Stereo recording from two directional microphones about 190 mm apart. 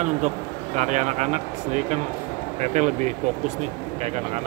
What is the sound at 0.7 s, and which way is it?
Speech, 40° right (ahead or behind).